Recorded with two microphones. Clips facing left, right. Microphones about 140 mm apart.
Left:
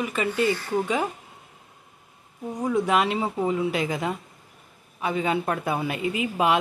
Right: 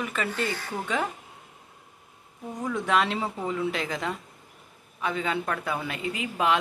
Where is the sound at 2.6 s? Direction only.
20° left (ahead or behind).